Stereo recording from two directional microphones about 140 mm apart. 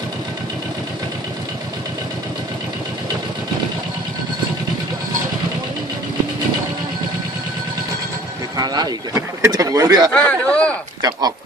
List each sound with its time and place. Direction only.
8.5 s speech: 30° right (ahead or behind)
10.1 s speech: 10° left (ahead or behind)
11.0 s speech: 30° right (ahead or behind)